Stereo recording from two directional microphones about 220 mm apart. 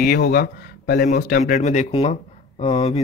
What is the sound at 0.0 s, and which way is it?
Speech, 45° left (ahead or behind).